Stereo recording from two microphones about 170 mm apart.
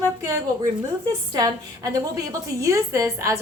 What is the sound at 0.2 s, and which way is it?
A woman's voice, 20° right (ahead or behind).